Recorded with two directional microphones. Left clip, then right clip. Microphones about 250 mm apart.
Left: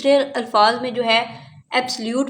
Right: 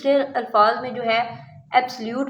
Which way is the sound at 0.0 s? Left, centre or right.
Left.